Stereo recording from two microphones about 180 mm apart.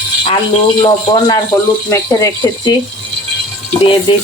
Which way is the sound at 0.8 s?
20° left (ahead or behind).